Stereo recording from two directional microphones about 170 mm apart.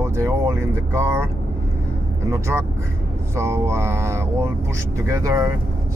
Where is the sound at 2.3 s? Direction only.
15° right (ahead or behind).